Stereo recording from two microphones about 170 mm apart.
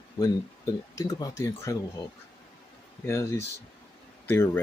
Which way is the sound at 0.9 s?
20° left (ahead or behind).